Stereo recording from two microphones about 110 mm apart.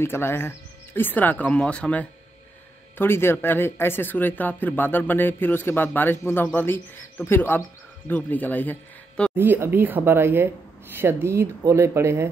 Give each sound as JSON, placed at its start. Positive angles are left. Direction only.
{"t": 0.0, "sound": "speech", "side_deg": 20}
{"t": 9.3, "sound": "speech", "side_deg": -20}